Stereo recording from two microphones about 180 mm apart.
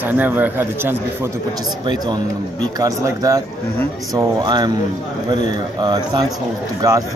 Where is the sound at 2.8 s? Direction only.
20° right (ahead or behind).